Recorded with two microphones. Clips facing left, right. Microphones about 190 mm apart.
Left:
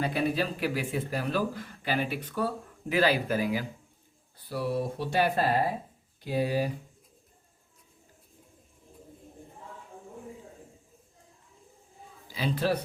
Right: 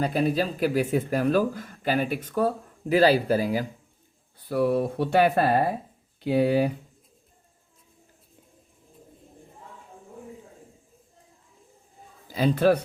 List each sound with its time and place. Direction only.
0.0 s speech: 40° right (ahead or behind)
2.9 s speech: 35° right (ahead or behind)
4.4 s speech: 55° right (ahead or behind)
12.3 s speech: 45° right (ahead or behind)